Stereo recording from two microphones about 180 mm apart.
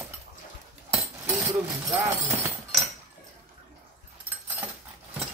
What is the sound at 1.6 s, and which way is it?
Speech, 15° right (ahead or behind).